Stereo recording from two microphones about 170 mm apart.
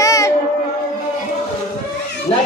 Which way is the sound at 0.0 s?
20° left (ahead or behind).